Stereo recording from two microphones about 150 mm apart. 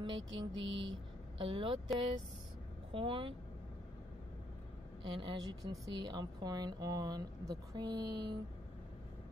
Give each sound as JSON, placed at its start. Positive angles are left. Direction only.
{"t": 0.0, "sound": "music", "side_deg": -30}
{"t": 2.9, "sound": "music", "side_deg": -35}
{"t": 5.0, "sound": "a woman's voice", "side_deg": -30}